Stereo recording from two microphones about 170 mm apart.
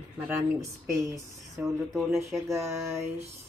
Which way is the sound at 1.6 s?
Centre (ahead or behind).